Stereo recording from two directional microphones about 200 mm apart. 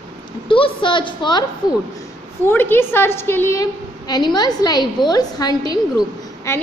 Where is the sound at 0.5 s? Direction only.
25° left (ahead or behind).